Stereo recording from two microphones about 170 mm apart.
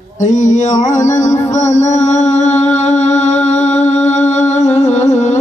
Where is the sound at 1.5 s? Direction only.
45° left (ahead or behind).